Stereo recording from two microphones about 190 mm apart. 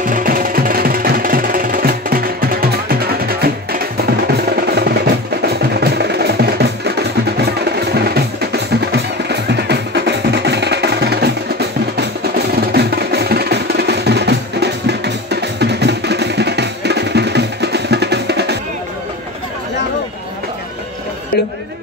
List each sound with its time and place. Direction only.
0.1 s music: 50° right (ahead or behind)
12.7 s music: 60° right (ahead or behind)